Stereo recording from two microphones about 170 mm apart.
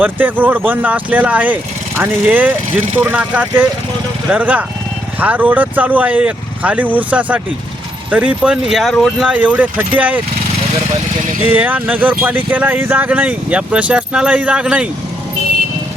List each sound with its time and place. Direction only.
0.0 s speech: 10° right (ahead or behind)
11.4 s speech: 10° right (ahead or behind)